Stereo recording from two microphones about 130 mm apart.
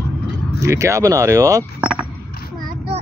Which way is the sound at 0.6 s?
25° right (ahead or behind).